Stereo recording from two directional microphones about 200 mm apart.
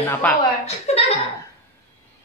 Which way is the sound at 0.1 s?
10° left (ahead or behind).